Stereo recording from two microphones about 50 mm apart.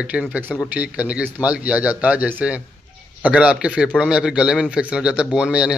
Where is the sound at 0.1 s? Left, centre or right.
Right.